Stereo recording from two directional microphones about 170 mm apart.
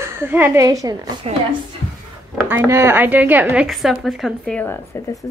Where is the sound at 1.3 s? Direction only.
35° right (ahead or behind).